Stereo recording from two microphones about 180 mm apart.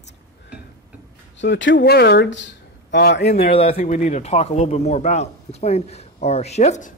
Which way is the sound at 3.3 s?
35° left (ahead or behind).